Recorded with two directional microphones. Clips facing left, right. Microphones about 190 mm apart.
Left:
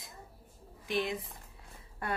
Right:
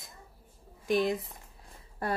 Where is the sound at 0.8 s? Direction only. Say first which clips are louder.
Right 6 dB; 40° right (ahead or behind).